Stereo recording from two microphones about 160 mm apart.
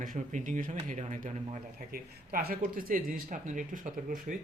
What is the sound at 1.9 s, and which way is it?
Speech, 65° right (ahead or behind).